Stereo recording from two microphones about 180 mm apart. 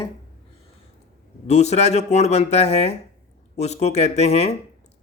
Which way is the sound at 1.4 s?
40° left (ahead or behind).